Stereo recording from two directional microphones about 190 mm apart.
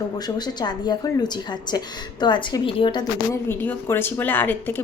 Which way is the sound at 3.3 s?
10° left (ahead or behind).